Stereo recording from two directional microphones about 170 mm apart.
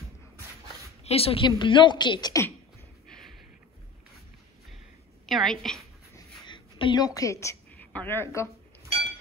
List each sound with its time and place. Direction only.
1.0 s speech: 35° left (ahead or behind)
3.1 s a sound: centre (ahead or behind)
5.2 s a woman's voice: centre (ahead or behind)
6.4 s a woman's voice: 25° left (ahead or behind)